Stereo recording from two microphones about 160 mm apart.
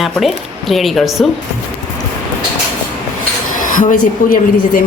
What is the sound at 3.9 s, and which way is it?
Speech, 60° left (ahead or behind).